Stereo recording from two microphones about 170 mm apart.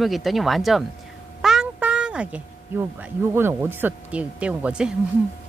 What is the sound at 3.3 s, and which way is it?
Speech, 15° right (ahead or behind).